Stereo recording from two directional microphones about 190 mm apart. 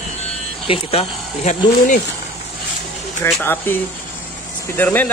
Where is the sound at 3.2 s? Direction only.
10° left (ahead or behind).